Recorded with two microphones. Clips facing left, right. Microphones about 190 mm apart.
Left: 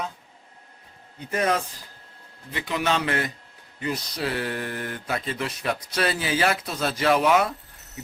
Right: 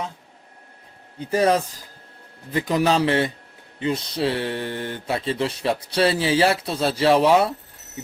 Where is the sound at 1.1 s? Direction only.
35° right (ahead or behind).